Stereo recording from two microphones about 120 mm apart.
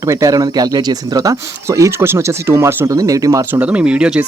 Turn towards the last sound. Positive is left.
turn(degrees=-10)  # may be behind; listen again after turning